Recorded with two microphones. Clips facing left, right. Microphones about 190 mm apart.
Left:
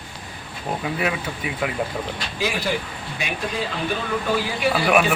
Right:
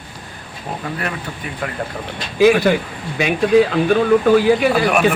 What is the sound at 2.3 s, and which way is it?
Speech, 60° right (ahead or behind).